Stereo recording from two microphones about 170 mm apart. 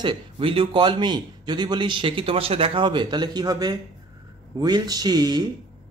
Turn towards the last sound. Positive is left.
turn(degrees=-25)  # may be behind; listen again after turning